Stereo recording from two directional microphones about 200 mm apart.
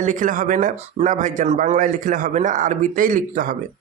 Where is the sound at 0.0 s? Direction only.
40° right (ahead or behind).